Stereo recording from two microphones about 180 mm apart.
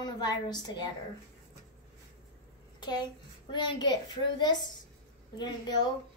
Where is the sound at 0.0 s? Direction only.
20° left (ahead or behind).